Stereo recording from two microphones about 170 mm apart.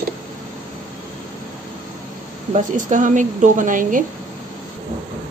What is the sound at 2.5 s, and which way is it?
A woman's voice, 45° right (ahead or behind).